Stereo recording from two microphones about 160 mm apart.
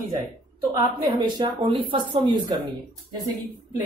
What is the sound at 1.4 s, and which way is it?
Speech, 30° right (ahead or behind).